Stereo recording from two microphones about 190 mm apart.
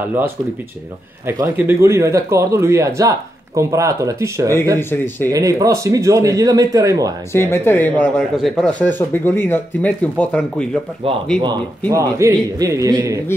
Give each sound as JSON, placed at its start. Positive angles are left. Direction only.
{"t": 0.0, "sound": "a man's voice", "side_deg": -10}
{"t": 4.7, "sound": "speech", "side_deg": 10}
{"t": 5.3, "sound": "a man's voice", "side_deg": -20}
{"t": 7.3, "sound": "speech", "side_deg": 10}
{"t": 11.9, "sound": "a man's voice", "side_deg": -15}